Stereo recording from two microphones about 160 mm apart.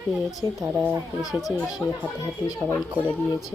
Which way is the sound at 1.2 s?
Centre (ahead or behind).